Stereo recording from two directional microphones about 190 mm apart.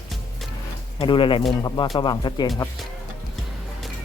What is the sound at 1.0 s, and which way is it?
Speech, 25° left (ahead or behind).